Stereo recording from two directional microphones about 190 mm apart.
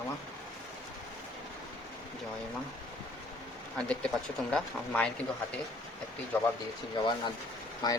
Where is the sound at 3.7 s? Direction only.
5° left (ahead or behind).